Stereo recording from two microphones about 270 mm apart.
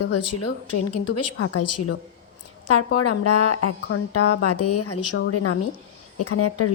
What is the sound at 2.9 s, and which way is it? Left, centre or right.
A woman's voice, left.